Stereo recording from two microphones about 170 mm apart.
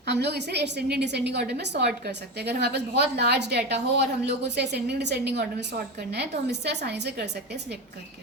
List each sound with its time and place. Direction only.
0.0 s a woman's voice: 85° right